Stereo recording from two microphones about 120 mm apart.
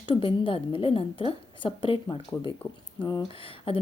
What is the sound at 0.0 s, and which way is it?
A woman's voice, 45° left (ahead or behind).